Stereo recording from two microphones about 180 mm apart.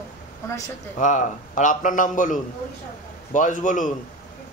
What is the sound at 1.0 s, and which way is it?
A man's voice, 45° left (ahead or behind).